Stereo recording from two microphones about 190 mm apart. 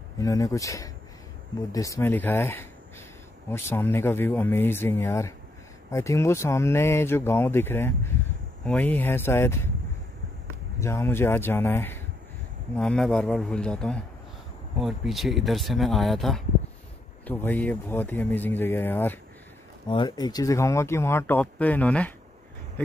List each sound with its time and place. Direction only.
0.2 s speech: 15° left (ahead or behind)
10.8 s speech: 15° left (ahead or behind)
19.9 s speech: 25° left (ahead or behind); by 22.1 s 5° left (ahead or behind)